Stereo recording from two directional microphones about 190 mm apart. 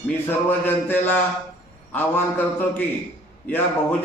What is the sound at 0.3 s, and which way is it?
A man's voice, 10° left (ahead or behind).